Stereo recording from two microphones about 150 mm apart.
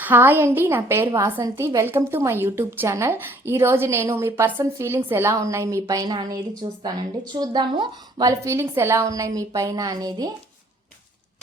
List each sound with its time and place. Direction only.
0.0 s a woman's voice: 15° right (ahead or behind); by 8.3 s 30° right (ahead or behind)
8.3 s a woman's voice: 20° right (ahead or behind)